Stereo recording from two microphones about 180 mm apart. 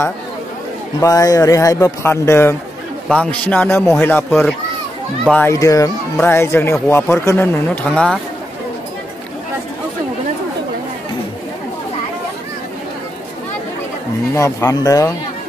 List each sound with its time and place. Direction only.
1.0 s a child's voice: 20° left (ahead or behind)
5.5 s speech: 20° left (ahead or behind)
14.3 s speech: 15° left (ahead or behind)